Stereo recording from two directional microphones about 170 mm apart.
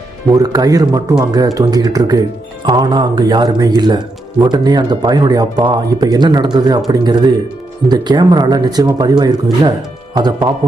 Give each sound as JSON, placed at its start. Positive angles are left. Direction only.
{"t": 0.3, "sound": "speech", "side_deg": -20}